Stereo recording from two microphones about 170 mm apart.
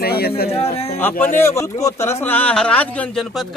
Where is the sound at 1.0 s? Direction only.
10° left (ahead or behind).